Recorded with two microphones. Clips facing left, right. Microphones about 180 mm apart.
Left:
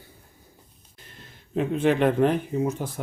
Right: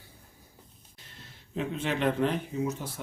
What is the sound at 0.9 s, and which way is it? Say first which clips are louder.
Speech: left 4 dB; 55° left (ahead or behind).